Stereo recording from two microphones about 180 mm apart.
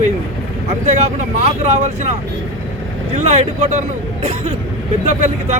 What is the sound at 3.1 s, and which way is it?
Speech, 40° right (ahead or behind).